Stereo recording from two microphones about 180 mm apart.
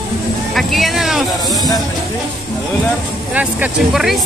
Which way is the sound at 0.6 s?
Centre (ahead or behind).